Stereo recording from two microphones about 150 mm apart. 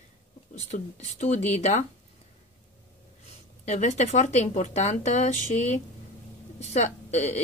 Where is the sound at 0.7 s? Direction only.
50° left (ahead or behind).